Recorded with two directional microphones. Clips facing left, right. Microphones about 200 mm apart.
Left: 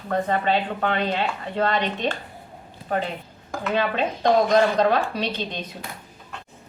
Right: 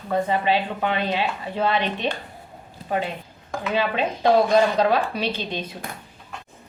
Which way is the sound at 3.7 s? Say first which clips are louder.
Even; 10° right (ahead or behind).